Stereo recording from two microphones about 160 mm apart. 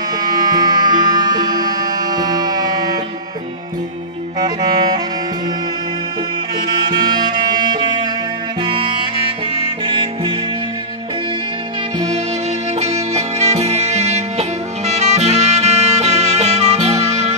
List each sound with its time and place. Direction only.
0.2 s music: 25° right (ahead or behind)
4.4 s saxophone: 25° right (ahead or behind)
6.9 s music: 25° right (ahead or behind)
12.8 s music: 45° right (ahead or behind)